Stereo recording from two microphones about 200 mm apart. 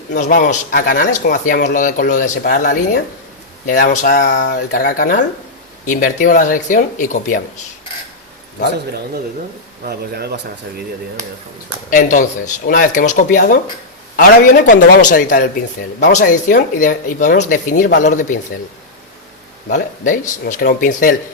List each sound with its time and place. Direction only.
0.1 s speech: 40° left (ahead or behind)
9.8 s speech: 50° right (ahead or behind)
11.9 s speech: 40° left (ahead or behind)
19.6 s speech: 40° left (ahead or behind)